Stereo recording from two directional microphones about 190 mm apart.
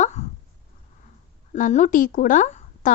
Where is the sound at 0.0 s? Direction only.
35° left (ahead or behind).